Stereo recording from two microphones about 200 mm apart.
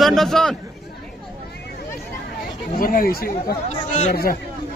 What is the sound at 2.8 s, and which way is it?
Speech, 45° left (ahead or behind).